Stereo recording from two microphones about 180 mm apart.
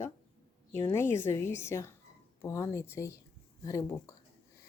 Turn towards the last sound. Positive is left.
turn(degrees=15)  # may be behind; listen again after turning